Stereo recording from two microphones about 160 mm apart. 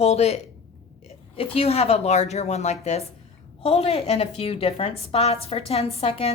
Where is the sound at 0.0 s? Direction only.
40° left (ahead or behind).